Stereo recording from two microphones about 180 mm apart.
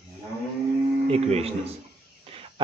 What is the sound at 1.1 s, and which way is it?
Speech, 35° right (ahead or behind).